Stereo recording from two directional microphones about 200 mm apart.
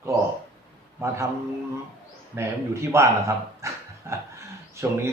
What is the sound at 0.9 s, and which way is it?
Speech, 15° right (ahead or behind).